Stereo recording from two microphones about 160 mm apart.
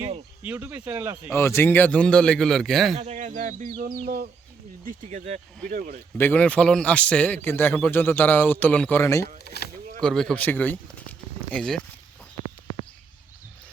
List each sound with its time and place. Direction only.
0.4 s speech: 10° right (ahead or behind)
1.3 s a man's voice: 15° left (ahead or behind)
3.0 s speech: 45° right (ahead or behind)
5.6 s speech: 60° right (ahead or behind)
6.1 s a man's voice: 10° left (ahead or behind)
9.4 s speech: 85° left
10.0 s speech: 5° left (ahead or behind)